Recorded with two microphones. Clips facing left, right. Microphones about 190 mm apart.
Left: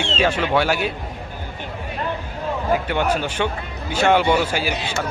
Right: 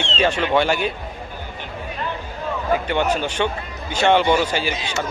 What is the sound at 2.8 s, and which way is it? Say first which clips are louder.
Speech: right 1 dB; 10° left (ahead or behind).